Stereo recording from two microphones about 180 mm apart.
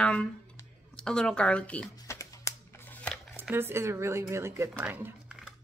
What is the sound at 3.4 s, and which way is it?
Speech, 10° right (ahead or behind).